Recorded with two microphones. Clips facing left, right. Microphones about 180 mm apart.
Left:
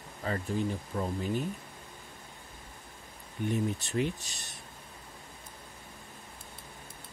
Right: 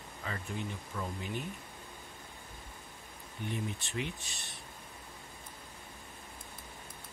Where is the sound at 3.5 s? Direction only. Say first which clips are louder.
Left 7 dB; 40° left (ahead or behind).